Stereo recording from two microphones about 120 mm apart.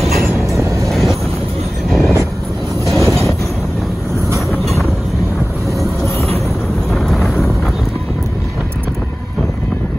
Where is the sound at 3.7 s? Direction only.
Centre (ahead or behind).